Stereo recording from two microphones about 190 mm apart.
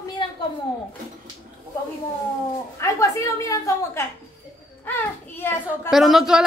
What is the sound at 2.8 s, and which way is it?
A woman's voice, 15° left (ahead or behind).